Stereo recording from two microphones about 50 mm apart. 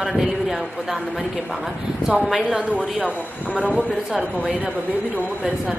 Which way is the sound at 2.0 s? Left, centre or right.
Centre.